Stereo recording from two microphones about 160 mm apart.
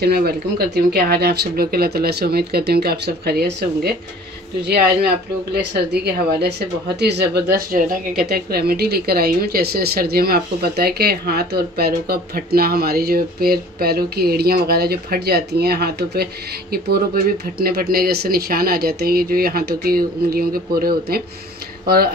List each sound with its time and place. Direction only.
0.0 s speech: 80° right
7.0 s a woman's voice: 90° right; by 22.1 s 70° right (ahead or behind)